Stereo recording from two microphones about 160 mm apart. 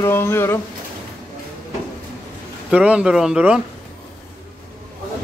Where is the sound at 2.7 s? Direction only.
5° right (ahead or behind).